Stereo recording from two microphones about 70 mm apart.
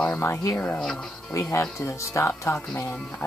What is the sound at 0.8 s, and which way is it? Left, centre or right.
Speech, centre.